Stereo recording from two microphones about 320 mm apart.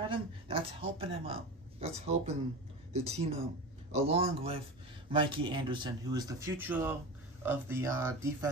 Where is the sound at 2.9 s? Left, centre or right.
Centre.